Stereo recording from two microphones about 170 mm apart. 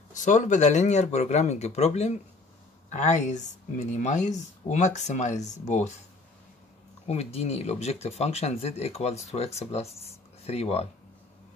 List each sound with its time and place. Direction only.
0.1 s speech: 45° left (ahead or behind)
7.1 s speech: 35° left (ahead or behind)